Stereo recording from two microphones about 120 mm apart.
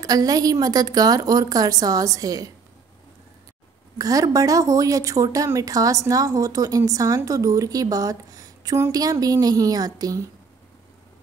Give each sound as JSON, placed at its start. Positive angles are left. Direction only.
{"t": 0.0, "sound": "a woman's voice", "side_deg": -30}
{"t": 4.0, "sound": "a woman's voice", "side_deg": -30}